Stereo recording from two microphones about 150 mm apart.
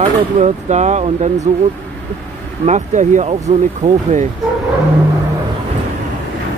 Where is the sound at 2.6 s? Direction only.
55° right (ahead or behind).